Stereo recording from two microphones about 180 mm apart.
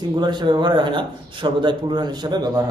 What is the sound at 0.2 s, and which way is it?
Speech, 25° right (ahead or behind).